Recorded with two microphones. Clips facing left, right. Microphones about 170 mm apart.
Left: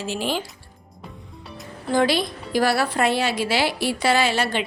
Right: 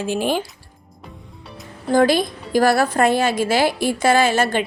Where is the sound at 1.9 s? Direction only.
45° right (ahead or behind).